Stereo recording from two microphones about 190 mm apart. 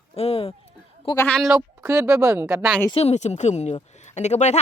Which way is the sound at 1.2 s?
5° left (ahead or behind).